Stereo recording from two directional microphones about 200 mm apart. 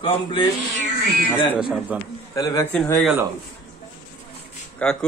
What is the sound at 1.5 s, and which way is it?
Speech, 5° right (ahead or behind).